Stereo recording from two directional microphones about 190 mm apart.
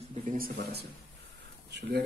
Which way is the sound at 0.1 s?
50° right (ahead or behind).